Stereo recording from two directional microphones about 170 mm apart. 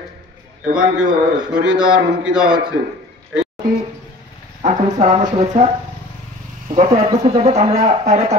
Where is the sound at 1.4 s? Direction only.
5° right (ahead or behind).